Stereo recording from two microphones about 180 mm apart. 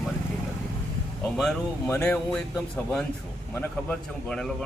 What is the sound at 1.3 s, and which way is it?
A man's voice, centre (ahead or behind).